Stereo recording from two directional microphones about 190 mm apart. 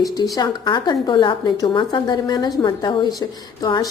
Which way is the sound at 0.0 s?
20° left (ahead or behind).